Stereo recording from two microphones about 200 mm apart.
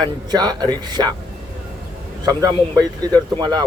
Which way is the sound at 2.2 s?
20° right (ahead or behind).